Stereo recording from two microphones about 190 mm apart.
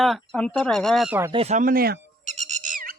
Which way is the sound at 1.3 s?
30° right (ahead or behind).